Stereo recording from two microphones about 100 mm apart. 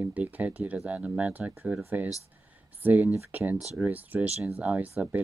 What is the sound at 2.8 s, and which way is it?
Speech, 15° right (ahead or behind).